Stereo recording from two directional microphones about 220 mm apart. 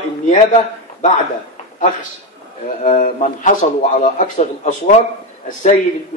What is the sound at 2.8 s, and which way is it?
Speech, 35° left (ahead or behind).